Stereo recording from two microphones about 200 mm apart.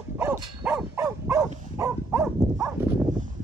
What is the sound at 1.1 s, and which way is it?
Dog, 15° right (ahead or behind).